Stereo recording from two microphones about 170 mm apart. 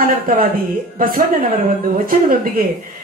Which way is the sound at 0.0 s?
50° right (ahead or behind).